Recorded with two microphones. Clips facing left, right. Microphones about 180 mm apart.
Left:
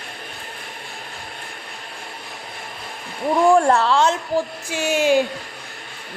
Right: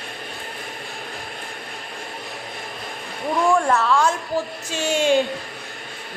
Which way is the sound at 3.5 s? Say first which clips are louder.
Left 1 dB; 30° left (ahead or behind).